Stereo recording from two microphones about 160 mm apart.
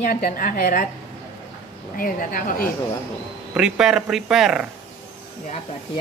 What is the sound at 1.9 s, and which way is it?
Speech, 60° left (ahead or behind).